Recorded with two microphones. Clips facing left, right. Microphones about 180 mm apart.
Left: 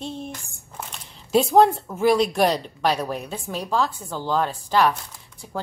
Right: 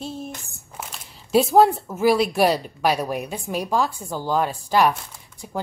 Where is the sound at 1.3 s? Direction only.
5° right (ahead or behind).